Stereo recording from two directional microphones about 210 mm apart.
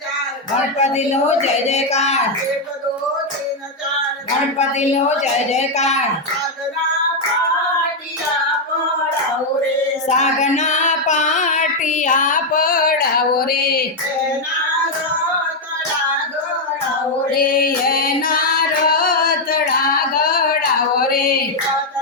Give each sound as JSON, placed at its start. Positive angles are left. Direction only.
{"t": 0.8, "sound": "speech", "side_deg": 30}
{"t": 4.5, "sound": "speech", "side_deg": 30}
{"t": 10.1, "sound": "child singing", "side_deg": 35}
{"t": 17.3, "sound": "music", "side_deg": 45}
{"t": 17.8, "sound": "singing", "side_deg": 45}
{"t": 20.1, "sound": "a sound", "side_deg": 45}